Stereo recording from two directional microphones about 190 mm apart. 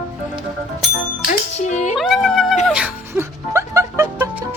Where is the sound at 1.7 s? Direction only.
40° left (ahead or behind).